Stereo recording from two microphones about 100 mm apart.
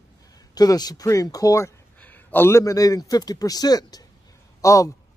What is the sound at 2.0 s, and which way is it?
A man's voice, 15° left (ahead or behind).